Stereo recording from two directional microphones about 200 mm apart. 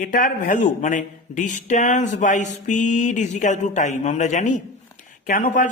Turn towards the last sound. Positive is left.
turn(degrees=40)  # may be behind; listen again after turning